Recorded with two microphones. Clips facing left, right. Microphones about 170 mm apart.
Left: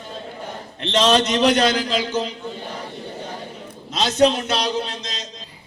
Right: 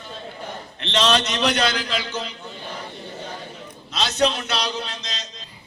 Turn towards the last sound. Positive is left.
turn(degrees=50)  # may be behind; listen again after turning